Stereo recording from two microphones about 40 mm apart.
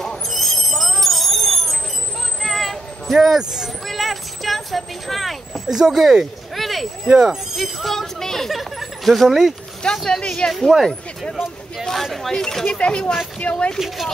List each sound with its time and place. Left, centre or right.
0.3 s a sound: centre
3.2 s speech: centre
3.8 s speech: centre
5.7 s speech: centre
7.1 s speech: centre
7.5 s speech: centre
8.5 s speech: centre
9.8 s speech: centre
11.8 s speech: centre
12.4 s speech: centre
12.6 s speech: left
13.7 s speech: centre